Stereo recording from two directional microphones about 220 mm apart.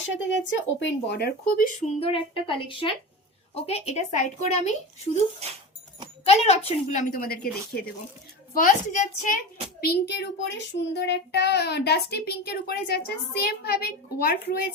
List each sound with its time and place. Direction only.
0.0 s a child's voice: 60° left (ahead or behind); by 1.7 s 40° left (ahead or behind)
2.0 s a woman's voice: 25° left (ahead or behind)
5.4 s speech: 30° right (ahead or behind)
6.2 s a woman's voice: 25° left (ahead or behind)
9.8 s a child's voice: 50° left (ahead or behind)